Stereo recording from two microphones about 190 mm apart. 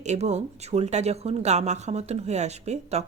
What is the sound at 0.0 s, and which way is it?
Speech, 35° right (ahead or behind).